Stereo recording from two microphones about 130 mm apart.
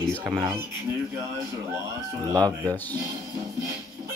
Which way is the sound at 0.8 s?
25° right (ahead or behind).